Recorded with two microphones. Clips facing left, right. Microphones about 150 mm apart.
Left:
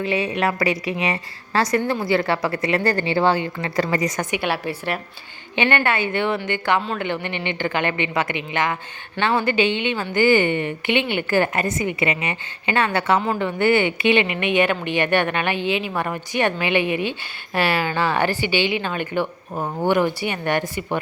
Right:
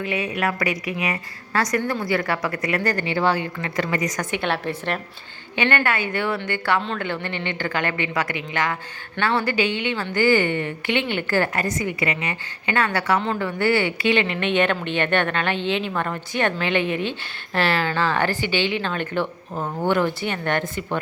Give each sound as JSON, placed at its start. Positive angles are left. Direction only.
{"t": 0.0, "sound": "speech", "side_deg": 30}
{"t": 4.3, "sound": "speech", "side_deg": 5}
{"t": 5.5, "sound": "speech", "side_deg": 20}